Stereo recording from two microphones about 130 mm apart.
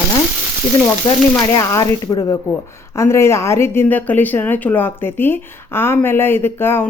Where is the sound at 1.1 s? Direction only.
30° left (ahead or behind).